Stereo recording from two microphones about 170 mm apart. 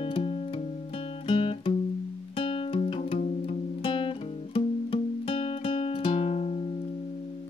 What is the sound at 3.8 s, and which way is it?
Guitar, 30° left (ahead or behind).